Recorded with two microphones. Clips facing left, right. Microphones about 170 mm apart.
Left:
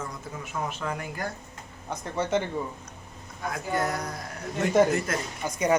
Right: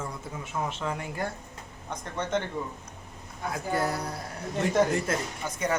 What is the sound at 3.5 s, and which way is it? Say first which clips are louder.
Speech: even; 30° right (ahead or behind).